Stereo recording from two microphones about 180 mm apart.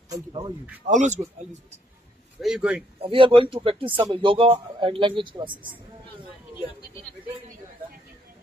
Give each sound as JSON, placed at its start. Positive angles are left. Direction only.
{"t": 0.1, "sound": "speech", "side_deg": -25}
{"t": 0.8, "sound": "speech", "side_deg": -40}
{"t": 2.4, "sound": "speech", "side_deg": -5}
{"t": 3.0, "sound": "a man's voice", "side_deg": -30}